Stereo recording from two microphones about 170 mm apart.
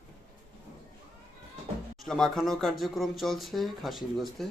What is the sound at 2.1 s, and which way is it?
Speech, centre (ahead or behind).